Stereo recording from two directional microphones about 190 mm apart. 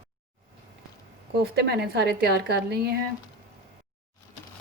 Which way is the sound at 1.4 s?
55° right (ahead or behind).